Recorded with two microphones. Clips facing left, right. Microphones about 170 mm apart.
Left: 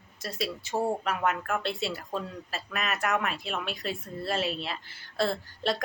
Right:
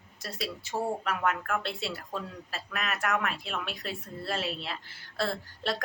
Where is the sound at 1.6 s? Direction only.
Centre (ahead or behind).